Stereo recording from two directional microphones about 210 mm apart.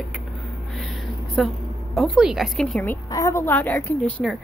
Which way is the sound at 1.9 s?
Centre (ahead or behind).